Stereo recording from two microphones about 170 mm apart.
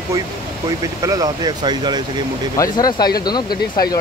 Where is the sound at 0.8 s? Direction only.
20° right (ahead or behind).